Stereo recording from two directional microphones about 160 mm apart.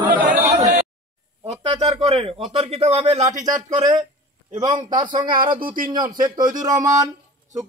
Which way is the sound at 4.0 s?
45° right (ahead or behind).